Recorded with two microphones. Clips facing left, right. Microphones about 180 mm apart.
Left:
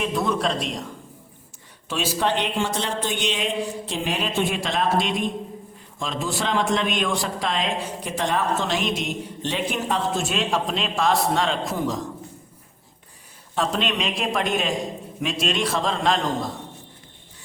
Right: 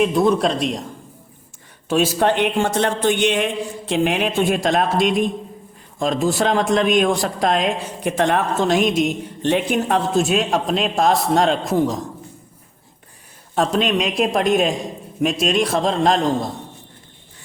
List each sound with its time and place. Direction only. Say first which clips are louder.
0.1 s a man's voice: right 7 dB; 35° right (ahead or behind)
1.9 s a man's voice: right 7 dB; 50° right (ahead or behind)
4.4 s speech: right 6 dB; 45° right (ahead or behind)
13.8 s speech: right 6 dB; 45° right (ahead or behind)